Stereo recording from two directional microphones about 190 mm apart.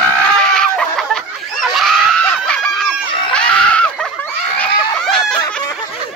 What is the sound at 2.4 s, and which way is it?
Snicker, 5° left (ahead or behind).